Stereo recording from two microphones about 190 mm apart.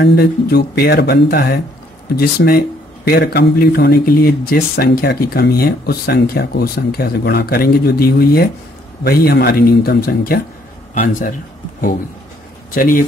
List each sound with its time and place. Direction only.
0.0 s speech: 55° left (ahead or behind)
12.7 s speech: 45° left (ahead or behind)